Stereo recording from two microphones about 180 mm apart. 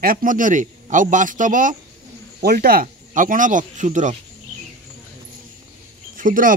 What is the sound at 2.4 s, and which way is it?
Speech, 55° right (ahead or behind).